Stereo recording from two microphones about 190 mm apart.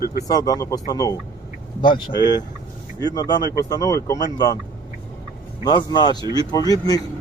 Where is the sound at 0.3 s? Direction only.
20° left (ahead or behind).